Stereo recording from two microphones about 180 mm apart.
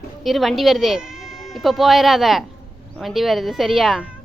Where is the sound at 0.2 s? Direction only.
Centre (ahead or behind).